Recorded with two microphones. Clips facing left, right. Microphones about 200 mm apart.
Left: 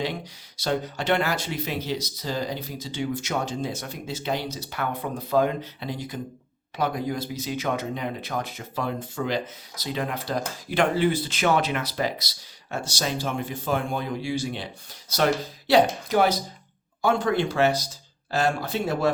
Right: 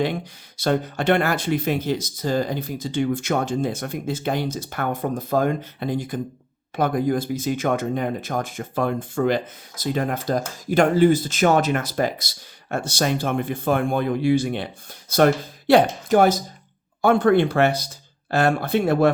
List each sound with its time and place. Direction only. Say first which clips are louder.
0.0 s speech: right 6 dB; 55° right (ahead or behind)